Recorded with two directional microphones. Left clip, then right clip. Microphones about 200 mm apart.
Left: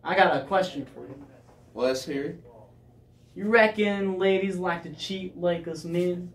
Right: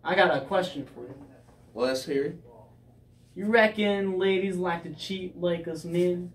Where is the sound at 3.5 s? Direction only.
10° left (ahead or behind).